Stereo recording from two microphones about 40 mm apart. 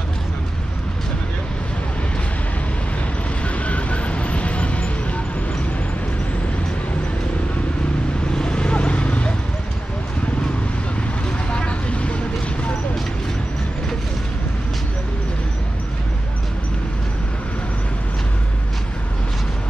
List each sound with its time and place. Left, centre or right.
3.4 s vehicle: left
8.4 s clip-clop: left
11.5 s vehicle: left